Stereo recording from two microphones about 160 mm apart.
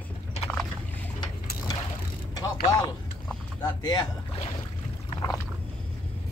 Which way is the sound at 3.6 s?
25° left (ahead or behind).